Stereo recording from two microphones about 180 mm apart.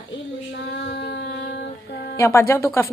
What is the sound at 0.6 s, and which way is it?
Carnatic music, 70° left (ahead or behind).